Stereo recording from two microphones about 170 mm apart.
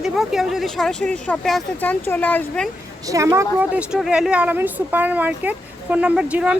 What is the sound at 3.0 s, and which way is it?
A woman's voice, 20° right (ahead or behind).